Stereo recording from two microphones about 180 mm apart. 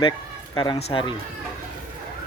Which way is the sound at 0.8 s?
35° left (ahead or behind).